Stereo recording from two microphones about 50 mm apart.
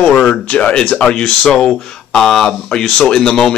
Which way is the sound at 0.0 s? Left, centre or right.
Left.